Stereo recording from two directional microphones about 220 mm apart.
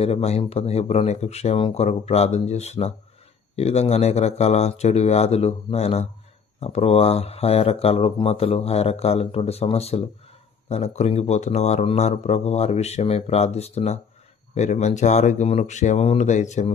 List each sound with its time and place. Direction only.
0.0 s speech: 30° left (ahead or behind)